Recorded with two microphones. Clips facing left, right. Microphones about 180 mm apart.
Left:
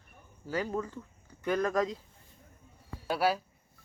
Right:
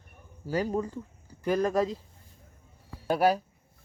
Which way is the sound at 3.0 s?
45° right (ahead or behind).